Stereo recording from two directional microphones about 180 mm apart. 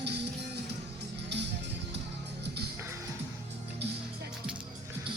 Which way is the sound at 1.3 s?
70° right (ahead or behind).